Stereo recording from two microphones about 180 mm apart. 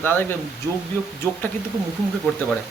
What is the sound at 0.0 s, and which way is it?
Speech, 10° left (ahead or behind).